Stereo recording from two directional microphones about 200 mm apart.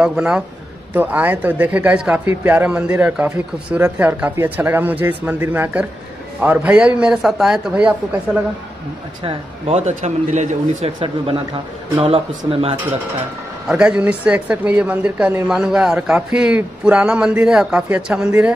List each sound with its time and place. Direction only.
0.0 s a woman's voice: 5° right (ahead or behind)
9.2 s speech: 30° right (ahead or behind)
12.4 s speech: 30° right (ahead or behind)
13.7 s a woman's voice: 5° right (ahead or behind)